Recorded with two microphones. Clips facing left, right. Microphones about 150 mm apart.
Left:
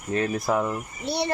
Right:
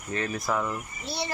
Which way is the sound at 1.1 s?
65° left (ahead or behind).